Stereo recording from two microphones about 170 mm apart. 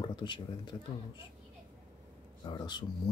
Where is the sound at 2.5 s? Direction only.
25° left (ahead or behind).